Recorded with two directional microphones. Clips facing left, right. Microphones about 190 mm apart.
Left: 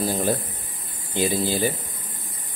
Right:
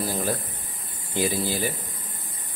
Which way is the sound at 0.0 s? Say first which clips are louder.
Left 4 dB; 25° left (ahead or behind).